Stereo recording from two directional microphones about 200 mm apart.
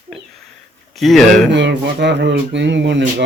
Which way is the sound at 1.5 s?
60° right (ahead or behind).